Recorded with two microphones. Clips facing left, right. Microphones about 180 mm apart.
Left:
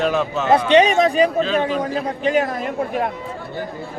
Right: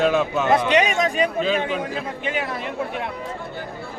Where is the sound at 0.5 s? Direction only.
30° left (ahead or behind).